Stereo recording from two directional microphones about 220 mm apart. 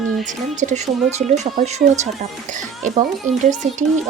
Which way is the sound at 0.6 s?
30° right (ahead or behind).